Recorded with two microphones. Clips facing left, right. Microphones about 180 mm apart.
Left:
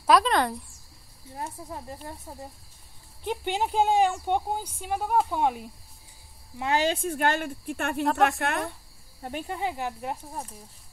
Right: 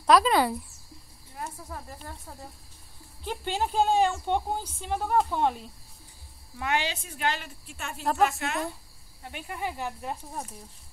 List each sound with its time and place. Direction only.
0.0 s a woman's voice: centre (ahead or behind)
1.3 s speech: 25° left (ahead or behind); by 5.7 s 10° left (ahead or behind)
6.8 s speech: 50° left (ahead or behind)
8.0 s a woman's voice: centre (ahead or behind)
8.4 s speech: 55° left (ahead or behind)
9.5 s speech: 20° left (ahead or behind)